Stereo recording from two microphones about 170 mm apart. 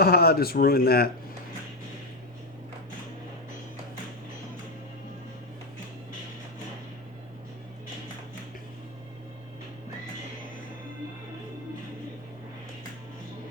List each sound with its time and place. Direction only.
0.0 s speech: 65° left (ahead or behind)